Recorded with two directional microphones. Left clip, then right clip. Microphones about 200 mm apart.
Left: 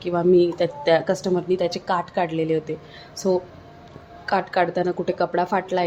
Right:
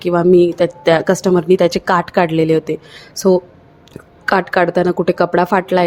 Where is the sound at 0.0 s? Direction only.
30° right (ahead or behind).